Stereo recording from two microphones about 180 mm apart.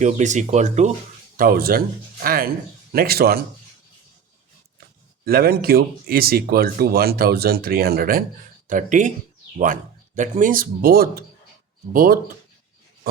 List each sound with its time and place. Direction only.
0.0 s speech: 40° right (ahead or behind)
1.4 s speech: 55° right (ahead or behind)
5.2 s speech: 55° right (ahead or behind)
10.2 s speech: 45° right (ahead or behind)